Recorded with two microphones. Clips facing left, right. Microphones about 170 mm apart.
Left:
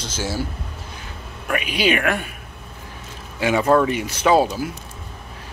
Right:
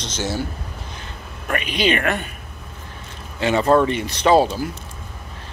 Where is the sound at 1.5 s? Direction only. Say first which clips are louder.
Even; 5° left (ahead or behind).